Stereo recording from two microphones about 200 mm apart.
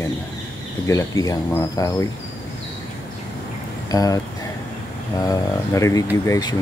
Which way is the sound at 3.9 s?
20° left (ahead or behind).